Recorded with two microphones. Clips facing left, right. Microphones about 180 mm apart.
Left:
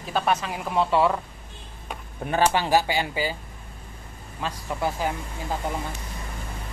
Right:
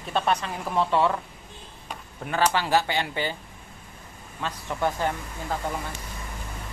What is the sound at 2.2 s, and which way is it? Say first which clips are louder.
Speech: left 2 dB; 20° left (ahead or behind).